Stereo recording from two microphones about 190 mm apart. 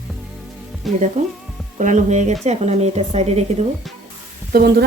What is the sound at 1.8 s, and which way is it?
Speech, 40° right (ahead or behind).